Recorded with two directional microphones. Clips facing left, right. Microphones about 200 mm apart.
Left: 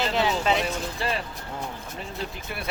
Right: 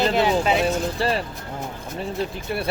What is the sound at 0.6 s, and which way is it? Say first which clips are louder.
Speech: right 7 dB; 35° right (ahead or behind).